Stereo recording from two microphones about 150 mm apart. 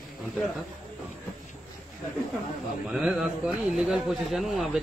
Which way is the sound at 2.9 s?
5° right (ahead or behind).